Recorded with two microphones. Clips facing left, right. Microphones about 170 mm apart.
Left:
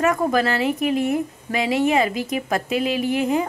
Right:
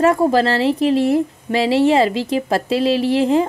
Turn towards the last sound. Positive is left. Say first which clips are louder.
# right 5 dB
turn(degrees=-30)  # may be behind; listen again after turning